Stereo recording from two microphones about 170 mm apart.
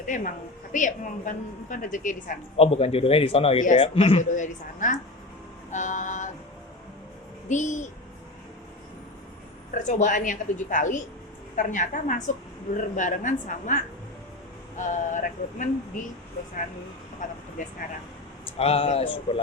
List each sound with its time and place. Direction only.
0.0 s a woman's voice: 50° left (ahead or behind)
2.6 s a man's voice: 35° left (ahead or behind)
3.6 s a woman's voice: 50° left (ahead or behind)
3.9 s a man's voice: 35° left (ahead or behind)
4.2 s a woman's voice: 45° left (ahead or behind)
7.4 s speech: 45° left (ahead or behind)
9.7 s a woman's voice: 45° left (ahead or behind)
17.2 s a woman's voice: 50° left (ahead or behind)
18.6 s a man's voice: 35° left (ahead or behind)